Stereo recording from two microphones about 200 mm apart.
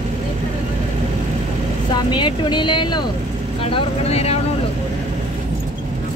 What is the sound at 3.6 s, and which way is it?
Vehicle, 30° left (ahead or behind).